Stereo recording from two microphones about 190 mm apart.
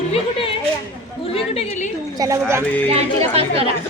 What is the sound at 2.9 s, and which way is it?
Speech, 30° right (ahead or behind).